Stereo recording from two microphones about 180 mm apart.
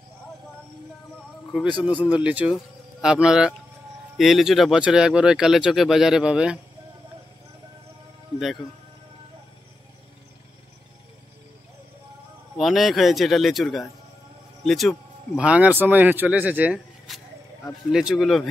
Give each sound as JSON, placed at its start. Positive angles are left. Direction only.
{"t": 1.7, "sound": "speech", "side_deg": 25}
{"t": 2.0, "sound": "speech", "side_deg": -10}
{"t": 8.4, "sound": "speech", "side_deg": 0}
{"t": 12.5, "sound": "speech", "side_deg": 0}